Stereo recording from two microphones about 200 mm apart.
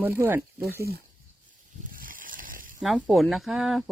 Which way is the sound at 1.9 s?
45° right (ahead or behind).